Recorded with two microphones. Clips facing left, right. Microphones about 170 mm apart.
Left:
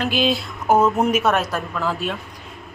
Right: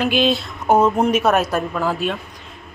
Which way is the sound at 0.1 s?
5° left (ahead or behind).